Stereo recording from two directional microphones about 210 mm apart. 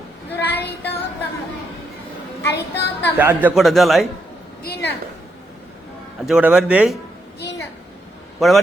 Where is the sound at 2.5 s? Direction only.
55° left (ahead or behind).